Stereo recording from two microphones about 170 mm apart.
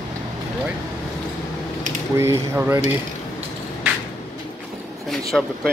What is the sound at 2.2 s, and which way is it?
Speech, 15° right (ahead or behind).